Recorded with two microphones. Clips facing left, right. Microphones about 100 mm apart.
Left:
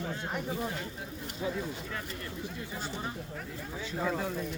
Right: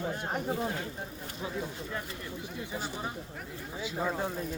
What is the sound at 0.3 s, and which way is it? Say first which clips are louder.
Speech: right 2 dB; 40° right (ahead or behind).